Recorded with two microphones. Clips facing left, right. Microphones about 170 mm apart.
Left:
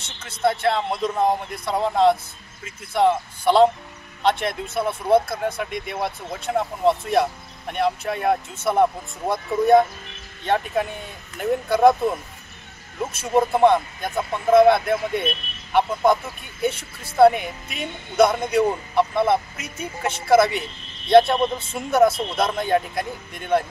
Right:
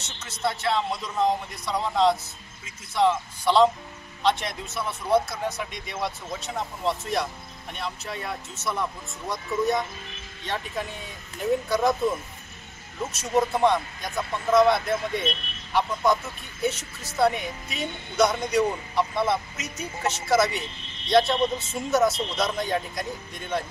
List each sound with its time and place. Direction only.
0.0 s speech: 55° left (ahead or behind)
13.1 s speech: 55° left (ahead or behind)